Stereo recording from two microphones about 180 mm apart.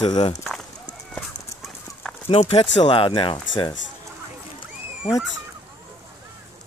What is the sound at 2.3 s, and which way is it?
Speech, 30° left (ahead or behind).